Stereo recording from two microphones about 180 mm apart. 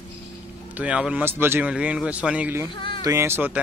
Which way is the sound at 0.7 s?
5° right (ahead or behind).